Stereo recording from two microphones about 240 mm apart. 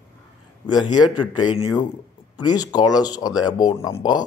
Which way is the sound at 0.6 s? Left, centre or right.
Centre.